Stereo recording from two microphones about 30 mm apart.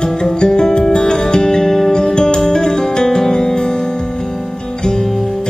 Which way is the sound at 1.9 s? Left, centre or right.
Left.